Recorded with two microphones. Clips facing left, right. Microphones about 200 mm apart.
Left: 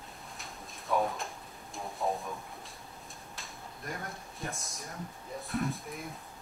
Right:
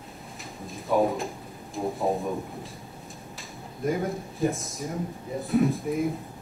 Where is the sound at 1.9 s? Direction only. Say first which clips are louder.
Right 5 dB; centre (ahead or behind).